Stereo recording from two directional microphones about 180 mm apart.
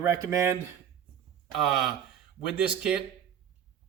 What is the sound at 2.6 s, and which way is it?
Speech, 5° right (ahead or behind).